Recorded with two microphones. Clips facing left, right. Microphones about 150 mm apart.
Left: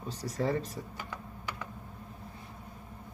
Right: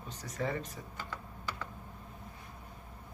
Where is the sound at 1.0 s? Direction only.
15° left (ahead or behind).